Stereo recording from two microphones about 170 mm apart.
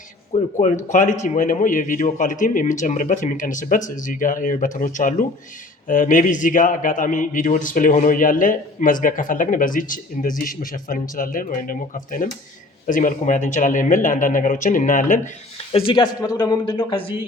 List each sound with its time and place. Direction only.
0.6 s a man's voice: 45° left (ahead or behind)
15.7 s speech: 30° left (ahead or behind)